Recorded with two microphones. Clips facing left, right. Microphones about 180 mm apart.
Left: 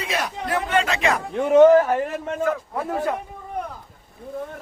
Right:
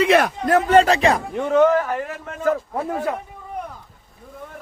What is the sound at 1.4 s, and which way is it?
Speech, 15° left (ahead or behind).